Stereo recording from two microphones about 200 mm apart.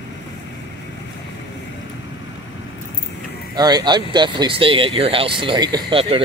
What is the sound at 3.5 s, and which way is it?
Speech, 20° right (ahead or behind).